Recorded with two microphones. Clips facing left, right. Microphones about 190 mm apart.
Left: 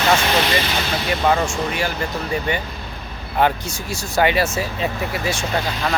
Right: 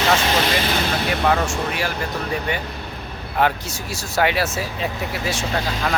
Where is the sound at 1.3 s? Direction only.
5° right (ahead or behind).